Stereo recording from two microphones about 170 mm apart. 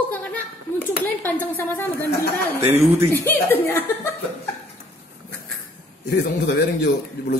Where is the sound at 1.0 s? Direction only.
10° left (ahead or behind).